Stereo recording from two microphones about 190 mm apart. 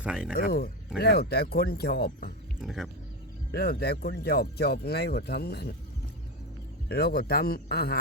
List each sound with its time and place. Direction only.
0.0 s speech: 5° right (ahead or behind)
0.3 s speech: 55° left (ahead or behind)
2.6 s speech: centre (ahead or behind)
3.5 s speech: 55° left (ahead or behind)
6.8 s speech: 55° left (ahead or behind)